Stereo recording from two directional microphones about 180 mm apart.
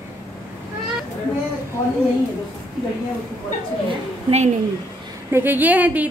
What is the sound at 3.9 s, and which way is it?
Speech, 30° right (ahead or behind).